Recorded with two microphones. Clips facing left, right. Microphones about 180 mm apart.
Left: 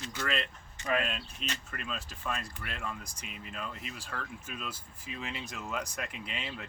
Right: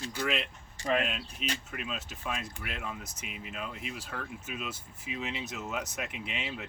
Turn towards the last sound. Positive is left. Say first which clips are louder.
# right 2 dB
turn(degrees=-5)  # may be behind; listen again after turning